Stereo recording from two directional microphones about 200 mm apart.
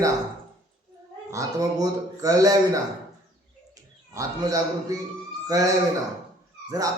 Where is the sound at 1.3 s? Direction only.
15° right (ahead or behind).